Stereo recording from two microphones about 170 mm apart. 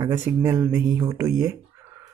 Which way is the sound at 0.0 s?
15° right (ahead or behind).